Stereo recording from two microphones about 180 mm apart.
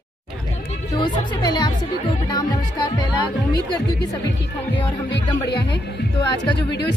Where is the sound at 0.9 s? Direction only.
25° left (ahead or behind).